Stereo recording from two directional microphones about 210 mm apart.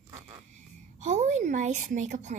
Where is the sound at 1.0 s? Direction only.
35° right (ahead or behind).